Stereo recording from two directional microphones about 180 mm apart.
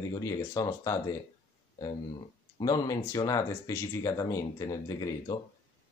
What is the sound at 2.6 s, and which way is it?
Speech, 20° left (ahead or behind).